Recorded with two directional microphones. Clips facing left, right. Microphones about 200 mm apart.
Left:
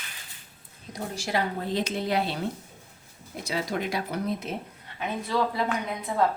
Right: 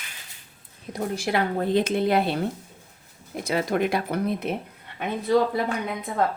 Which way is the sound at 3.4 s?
55° right (ahead or behind).